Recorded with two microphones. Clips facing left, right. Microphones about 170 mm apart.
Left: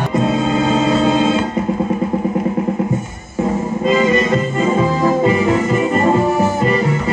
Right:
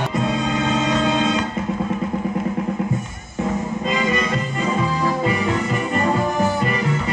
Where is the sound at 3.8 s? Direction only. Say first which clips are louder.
Left 9 dB; 40° left (ahead or behind).